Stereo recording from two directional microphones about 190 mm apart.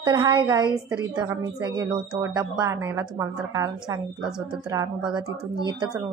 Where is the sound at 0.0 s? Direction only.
25° right (ahead or behind).